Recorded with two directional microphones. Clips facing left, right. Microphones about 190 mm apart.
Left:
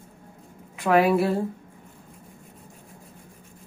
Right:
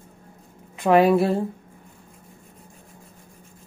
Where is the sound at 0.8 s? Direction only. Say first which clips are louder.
Right 3 dB; 30° right (ahead or behind).